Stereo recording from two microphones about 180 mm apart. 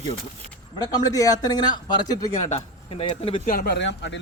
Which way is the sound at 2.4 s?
35° left (ahead or behind).